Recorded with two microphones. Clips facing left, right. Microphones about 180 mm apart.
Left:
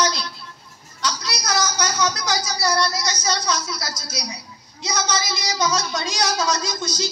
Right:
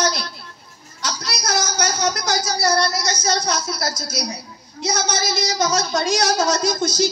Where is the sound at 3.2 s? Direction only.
50° right (ahead or behind).